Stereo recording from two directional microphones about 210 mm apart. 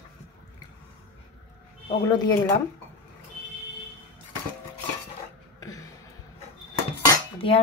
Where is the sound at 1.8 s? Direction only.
20° left (ahead or behind).